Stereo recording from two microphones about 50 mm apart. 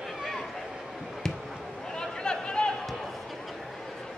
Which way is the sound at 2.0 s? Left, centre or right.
Centre.